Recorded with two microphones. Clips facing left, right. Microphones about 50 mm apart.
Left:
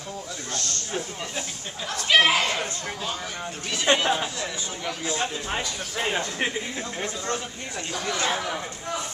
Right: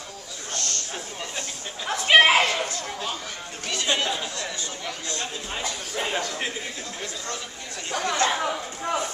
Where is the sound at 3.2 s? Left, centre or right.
Centre.